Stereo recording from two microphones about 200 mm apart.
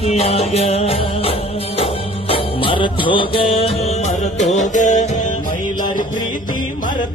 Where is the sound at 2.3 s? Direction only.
25° left (ahead or behind).